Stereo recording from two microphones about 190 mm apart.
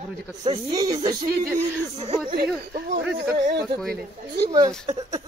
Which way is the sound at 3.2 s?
55° right (ahead or behind).